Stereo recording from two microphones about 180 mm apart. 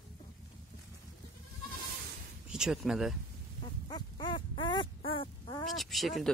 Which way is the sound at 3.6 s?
25° left (ahead or behind).